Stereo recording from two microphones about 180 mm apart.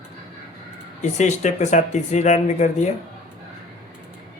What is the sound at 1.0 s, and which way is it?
Speech, 40° left (ahead or behind).